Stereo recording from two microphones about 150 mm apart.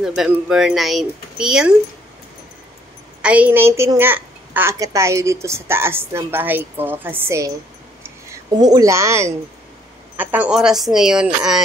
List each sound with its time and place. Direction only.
0.0 s speech: 5° right (ahead or behind)
3.2 s a child's voice: 10° right (ahead or behind)
8.0 s a sound: 20° right (ahead or behind)
10.1 s speech: 10° right (ahead or behind)